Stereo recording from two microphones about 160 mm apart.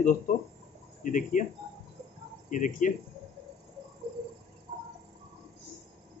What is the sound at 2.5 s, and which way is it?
Speech, 55° left (ahead or behind).